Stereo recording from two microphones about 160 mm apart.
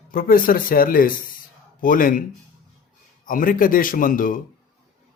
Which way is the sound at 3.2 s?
60° left (ahead or behind).